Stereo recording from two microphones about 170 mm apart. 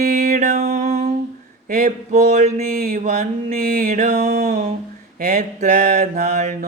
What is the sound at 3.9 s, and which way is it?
Mantra, 40° right (ahead or behind).